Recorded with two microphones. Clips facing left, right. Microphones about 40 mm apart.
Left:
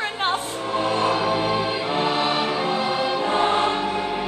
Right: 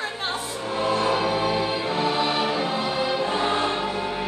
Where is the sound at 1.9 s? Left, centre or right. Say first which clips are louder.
Left 2 dB; left.